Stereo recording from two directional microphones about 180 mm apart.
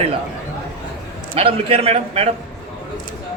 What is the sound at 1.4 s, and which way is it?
Speech, 30° right (ahead or behind).